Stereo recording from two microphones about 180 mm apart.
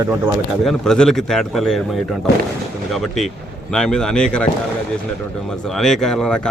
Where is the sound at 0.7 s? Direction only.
5° left (ahead or behind).